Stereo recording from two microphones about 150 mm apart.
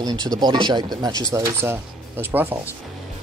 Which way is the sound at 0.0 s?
25° right (ahead or behind).